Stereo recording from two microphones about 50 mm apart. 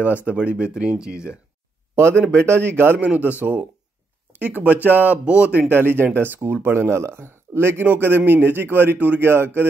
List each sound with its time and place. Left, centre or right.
0.0 s speech: left
0.5 s speech: centre
2.3 s a man's voice: right
3.1 s speech: right
5.2 s speech: right
5.7 s a man's voice: right
7.8 s a man's voice: right
9.2 s a man's voice: right